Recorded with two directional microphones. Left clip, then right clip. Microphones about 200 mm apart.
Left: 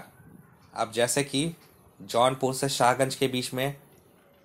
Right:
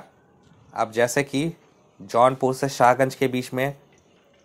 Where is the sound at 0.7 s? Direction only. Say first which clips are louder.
Right 5 dB; 25° right (ahead or behind).